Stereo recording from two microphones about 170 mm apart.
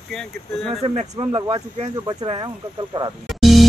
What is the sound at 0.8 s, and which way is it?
Speech, 35° right (ahead or behind).